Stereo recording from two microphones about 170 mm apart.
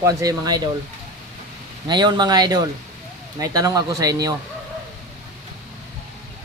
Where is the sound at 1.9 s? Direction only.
25° right (ahead or behind).